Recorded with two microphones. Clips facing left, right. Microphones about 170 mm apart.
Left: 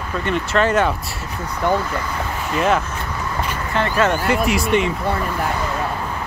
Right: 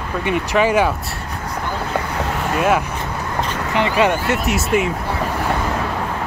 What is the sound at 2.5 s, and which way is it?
Speech, 5° right (ahead or behind).